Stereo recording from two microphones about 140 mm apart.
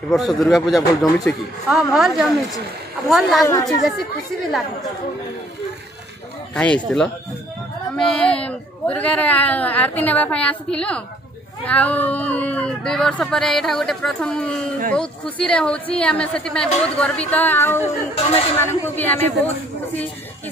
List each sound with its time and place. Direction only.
0.1 s speech: centre (ahead or behind)
6.5 s speech: 10° left (ahead or behind)
18.1 s speech: 45° left (ahead or behind)
18.6 s speech: 15° left (ahead or behind)